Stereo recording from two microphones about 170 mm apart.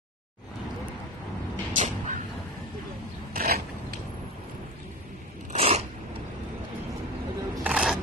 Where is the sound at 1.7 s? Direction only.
45° right (ahead or behind).